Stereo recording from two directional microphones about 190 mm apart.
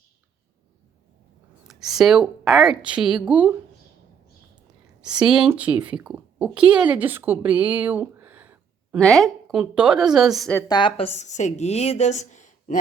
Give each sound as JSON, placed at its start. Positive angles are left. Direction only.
{"t": 1.6, "sound": "speech", "side_deg": 0}
{"t": 5.0, "sound": "speech", "side_deg": -5}
{"t": 9.0, "sound": "speech", "side_deg": 5}
{"t": 10.7, "sound": "a woman's voice", "side_deg": 25}